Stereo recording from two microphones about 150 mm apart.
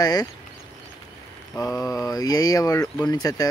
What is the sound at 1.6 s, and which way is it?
Speech, 20° left (ahead or behind).